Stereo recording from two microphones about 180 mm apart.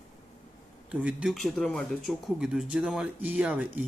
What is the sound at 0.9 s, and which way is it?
Speech, 5° right (ahead or behind).